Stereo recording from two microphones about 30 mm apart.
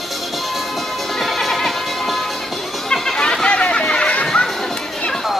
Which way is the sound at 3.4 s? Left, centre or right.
Left.